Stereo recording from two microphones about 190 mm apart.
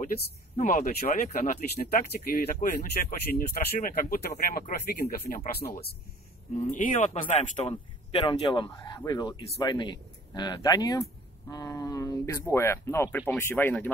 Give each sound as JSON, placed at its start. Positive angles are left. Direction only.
{"t": 0.6, "sound": "speech", "side_deg": 45}
{"t": 6.6, "sound": "speech", "side_deg": 40}